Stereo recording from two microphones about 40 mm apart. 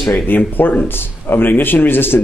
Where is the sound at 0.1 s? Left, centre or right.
Left.